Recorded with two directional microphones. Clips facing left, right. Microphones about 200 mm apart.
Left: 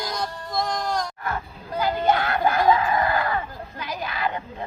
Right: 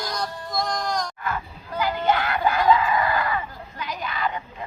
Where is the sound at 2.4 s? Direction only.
45° left (ahead or behind).